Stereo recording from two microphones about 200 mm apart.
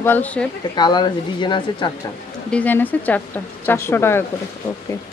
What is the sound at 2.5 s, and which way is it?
A woman's voice, 10° left (ahead or behind).